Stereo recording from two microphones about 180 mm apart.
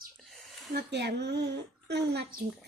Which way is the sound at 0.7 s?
65° right (ahead or behind).